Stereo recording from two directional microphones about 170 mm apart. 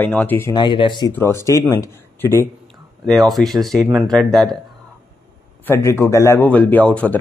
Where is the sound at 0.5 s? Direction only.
25° left (ahead or behind).